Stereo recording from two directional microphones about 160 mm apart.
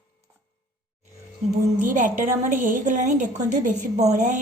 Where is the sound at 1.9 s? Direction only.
55° right (ahead or behind).